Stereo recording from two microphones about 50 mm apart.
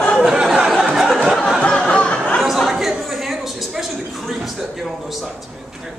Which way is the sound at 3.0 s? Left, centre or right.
Centre.